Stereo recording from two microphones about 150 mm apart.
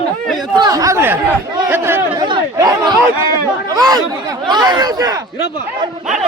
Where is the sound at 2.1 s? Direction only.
30° right (ahead or behind).